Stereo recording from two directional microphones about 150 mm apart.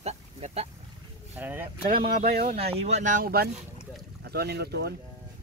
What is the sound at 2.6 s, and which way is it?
Speech, 45° right (ahead or behind).